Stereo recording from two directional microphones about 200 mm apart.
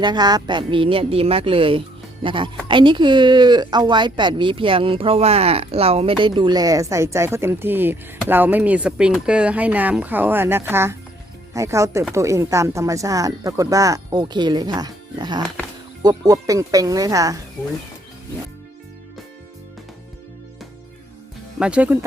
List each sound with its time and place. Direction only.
0.0 s speech: 20° right (ahead or behind)
21.6 s speech: 5° right (ahead or behind)